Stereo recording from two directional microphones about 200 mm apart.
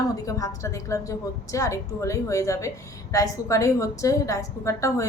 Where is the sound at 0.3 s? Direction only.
15° left (ahead or behind).